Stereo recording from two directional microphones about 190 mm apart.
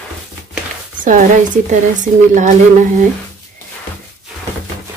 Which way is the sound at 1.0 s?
45° right (ahead or behind).